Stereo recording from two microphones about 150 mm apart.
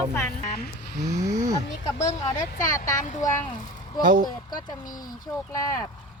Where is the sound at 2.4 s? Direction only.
60° left (ahead or behind).